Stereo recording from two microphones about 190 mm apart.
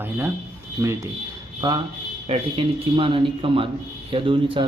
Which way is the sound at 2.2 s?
30° right (ahead or behind).